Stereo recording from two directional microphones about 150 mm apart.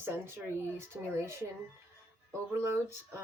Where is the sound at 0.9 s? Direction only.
20° right (ahead or behind).